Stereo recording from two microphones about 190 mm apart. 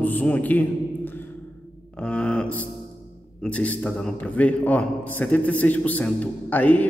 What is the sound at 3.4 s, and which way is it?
A man's voice, 5° left (ahead or behind).